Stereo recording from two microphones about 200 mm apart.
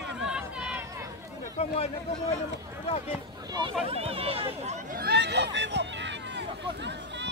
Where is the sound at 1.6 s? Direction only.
30° left (ahead or behind).